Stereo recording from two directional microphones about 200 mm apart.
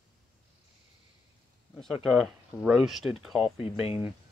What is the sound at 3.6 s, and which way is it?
Speech, 30° left (ahead or behind).